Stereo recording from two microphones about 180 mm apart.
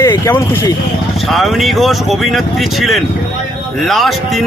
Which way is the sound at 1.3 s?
Centre (ahead or behind).